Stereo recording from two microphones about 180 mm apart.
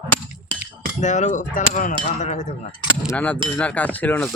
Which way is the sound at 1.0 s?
40° left (ahead or behind).